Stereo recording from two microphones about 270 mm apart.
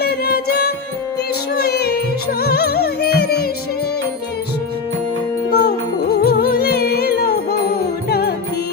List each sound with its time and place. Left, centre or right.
0.0 s music: left
5.5 s music: left